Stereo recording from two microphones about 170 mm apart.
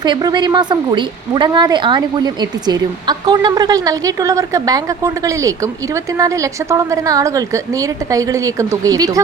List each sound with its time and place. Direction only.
0.0 s a woman's voice: 25° right (ahead or behind)